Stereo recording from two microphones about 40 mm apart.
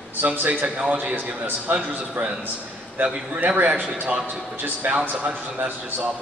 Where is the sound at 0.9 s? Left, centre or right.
Right.